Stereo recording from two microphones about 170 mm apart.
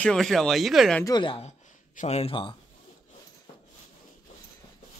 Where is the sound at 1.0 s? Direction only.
25° left (ahead or behind).